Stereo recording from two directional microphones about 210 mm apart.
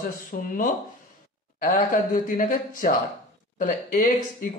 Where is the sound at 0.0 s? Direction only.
40° left (ahead or behind).